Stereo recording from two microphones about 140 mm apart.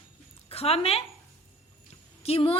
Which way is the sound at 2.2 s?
45° left (ahead or behind).